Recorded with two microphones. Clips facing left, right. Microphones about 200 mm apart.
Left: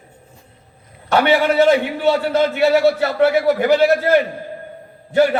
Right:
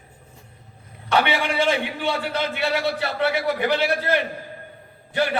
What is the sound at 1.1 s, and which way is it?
A man's voice, 40° left (ahead or behind).